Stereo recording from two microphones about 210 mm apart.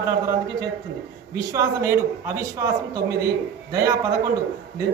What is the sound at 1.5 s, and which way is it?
A man's voice, 15° right (ahead or behind).